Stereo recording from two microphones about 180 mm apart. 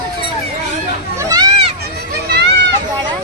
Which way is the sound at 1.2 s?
20° right (ahead or behind).